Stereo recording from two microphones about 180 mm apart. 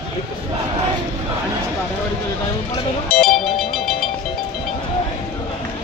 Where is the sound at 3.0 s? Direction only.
Centre (ahead or behind).